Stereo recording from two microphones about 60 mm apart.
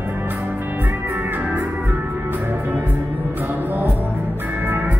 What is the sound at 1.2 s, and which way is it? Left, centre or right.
Music, right.